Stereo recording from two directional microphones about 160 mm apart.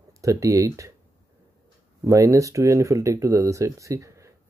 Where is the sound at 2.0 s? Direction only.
20° right (ahead or behind).